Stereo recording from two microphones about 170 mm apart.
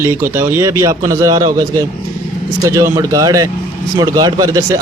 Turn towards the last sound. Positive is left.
turn(degrees=-20)  # may be behind; listen again after turning